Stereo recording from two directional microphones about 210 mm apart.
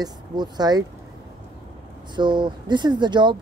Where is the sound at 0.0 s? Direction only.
20° right (ahead or behind).